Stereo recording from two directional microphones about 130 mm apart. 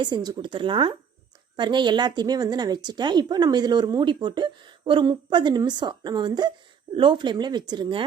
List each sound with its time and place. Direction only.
0.0 s a woman's voice: 30° right (ahead or behind)